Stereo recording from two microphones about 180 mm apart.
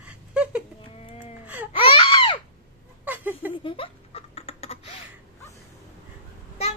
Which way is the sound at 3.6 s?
30° left (ahead or behind).